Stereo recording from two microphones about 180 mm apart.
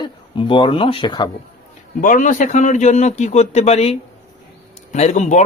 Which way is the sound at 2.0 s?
45° left (ahead or behind).